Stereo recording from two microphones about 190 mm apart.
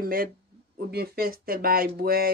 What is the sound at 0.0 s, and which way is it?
Speech, 50° right (ahead or behind).